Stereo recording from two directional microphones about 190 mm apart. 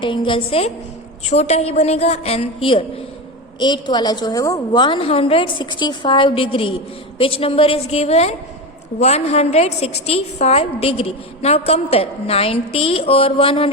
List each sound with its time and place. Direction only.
0.0 s a woman's voice: 25° left (ahead or behind)